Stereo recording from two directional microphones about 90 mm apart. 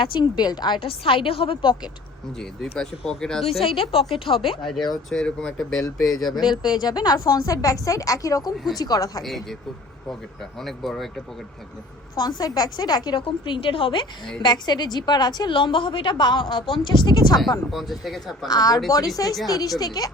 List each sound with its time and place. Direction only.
0.0 s a woman's voice: 60° left (ahead or behind)
0.8 s a woman's voice: 85° left
2.4 s speech: 5° left (ahead or behind)
3.6 s a woman's voice: 90° left
4.6 s speech: 5° left (ahead or behind)
6.7 s a woman's voice: 50° left (ahead or behind)
9.2 s speech: centre (ahead or behind)
10.6 s speech: centre (ahead or behind)
12.1 s a woman's voice: 45° left (ahead or behind); by 14.1 s 75° left (ahead or behind)
14.4 s a woman's voice: 50° left (ahead or behind)
17.7 s speech: centre (ahead or behind)
18.4 s a woman's voice: 45° left (ahead or behind)